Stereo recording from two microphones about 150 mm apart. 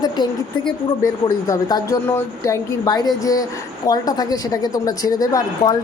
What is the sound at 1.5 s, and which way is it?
A woman's voice, 25° left (ahead or behind).